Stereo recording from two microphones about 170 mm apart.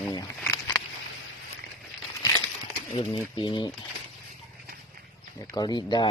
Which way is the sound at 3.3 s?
25° left (ahead or behind).